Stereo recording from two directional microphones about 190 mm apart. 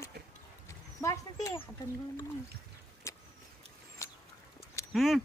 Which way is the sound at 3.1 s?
15° left (ahead or behind).